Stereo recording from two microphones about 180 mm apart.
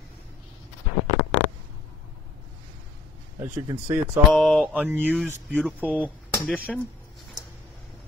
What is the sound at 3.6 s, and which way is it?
Speech, 20° right (ahead or behind).